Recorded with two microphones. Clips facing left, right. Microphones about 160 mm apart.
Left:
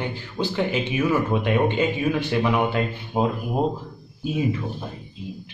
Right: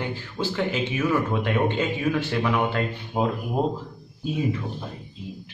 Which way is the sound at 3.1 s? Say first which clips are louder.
Left 2 dB; 20° left (ahead or behind).